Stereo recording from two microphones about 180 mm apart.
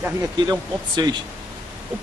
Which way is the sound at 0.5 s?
20° right (ahead or behind).